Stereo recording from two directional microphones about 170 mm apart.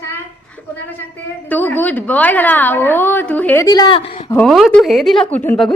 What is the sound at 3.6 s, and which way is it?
Speech, 25° left (ahead or behind).